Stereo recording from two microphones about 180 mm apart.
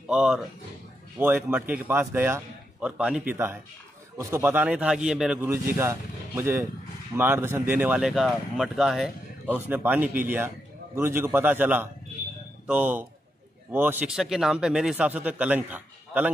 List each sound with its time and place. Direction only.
0.1 s speech: 5° right (ahead or behind)
5.5 s speech: 15° right (ahead or behind)